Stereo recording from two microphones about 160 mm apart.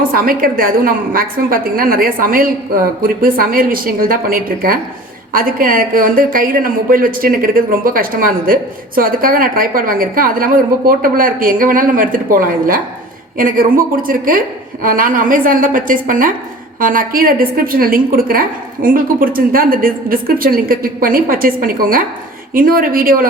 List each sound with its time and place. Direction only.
0.1 s a woman's voice: 65° right (ahead or behind)